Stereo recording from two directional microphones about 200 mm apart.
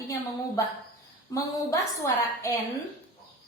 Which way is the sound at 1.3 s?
15° left (ahead or behind).